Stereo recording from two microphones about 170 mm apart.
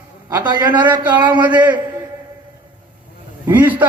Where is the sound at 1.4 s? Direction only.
10° right (ahead or behind).